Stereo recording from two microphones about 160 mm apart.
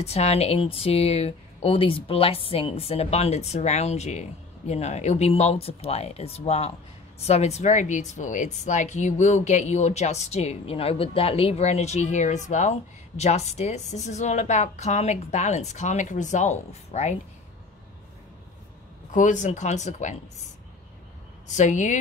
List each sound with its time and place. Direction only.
0.0 s speech: 40° left (ahead or behind)
19.1 s speech: 50° left (ahead or behind)
21.5 s speech: 50° left (ahead or behind)